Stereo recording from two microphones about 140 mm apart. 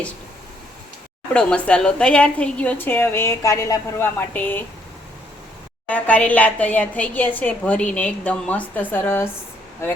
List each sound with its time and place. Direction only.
1.3 s a woman's voice: 10° left (ahead or behind)
5.9 s a woman's voice: 10° left (ahead or behind)